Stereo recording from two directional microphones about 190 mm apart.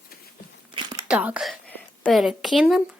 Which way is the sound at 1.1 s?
5° right (ahead or behind).